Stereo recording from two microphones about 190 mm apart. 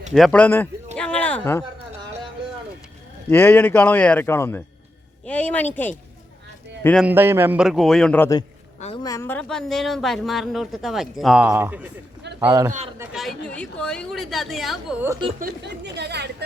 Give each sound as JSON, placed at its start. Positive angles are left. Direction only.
{"t": 0.1, "sound": "a man's voice", "side_deg": 5}
{"t": 0.9, "sound": "a sound", "side_deg": 5}
{"t": 3.2, "sound": "a man's voice", "side_deg": 10}
{"t": 7.0, "sound": "a man's voice", "side_deg": -10}
{"t": 13.1, "sound": "a woman's voice", "side_deg": 5}
{"t": 15.4, "sound": "speech", "side_deg": -55}